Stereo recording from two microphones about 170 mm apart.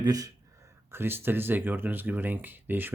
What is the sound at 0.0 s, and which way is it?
Speech, 20° right (ahead or behind).